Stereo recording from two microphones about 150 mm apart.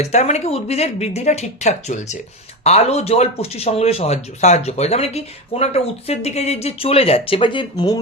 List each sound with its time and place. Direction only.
0.0 s speech: 50° left (ahead or behind); by 7.9 s 30° left (ahead or behind)